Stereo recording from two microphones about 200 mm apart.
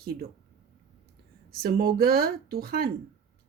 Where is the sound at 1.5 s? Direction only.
50° right (ahead or behind).